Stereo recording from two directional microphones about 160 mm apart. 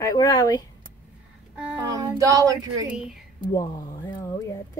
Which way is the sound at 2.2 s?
20° right (ahead or behind).